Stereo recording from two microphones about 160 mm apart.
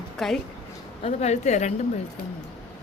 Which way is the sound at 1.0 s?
45° left (ahead or behind).